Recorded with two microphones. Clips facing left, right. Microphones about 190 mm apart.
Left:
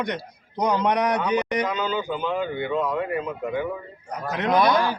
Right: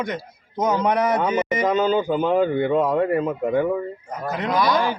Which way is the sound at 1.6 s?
45° right (ahead or behind).